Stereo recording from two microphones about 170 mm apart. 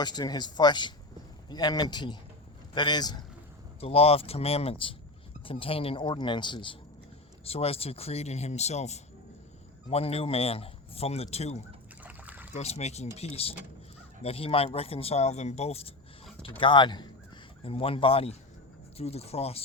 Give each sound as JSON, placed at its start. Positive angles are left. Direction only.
{"t": 0.0, "sound": "speech", "side_deg": 25}
{"t": 3.8, "sound": "speech", "side_deg": 35}
{"t": 12.0, "sound": "a sound", "side_deg": -10}
{"t": 12.5, "sound": "speech", "side_deg": 40}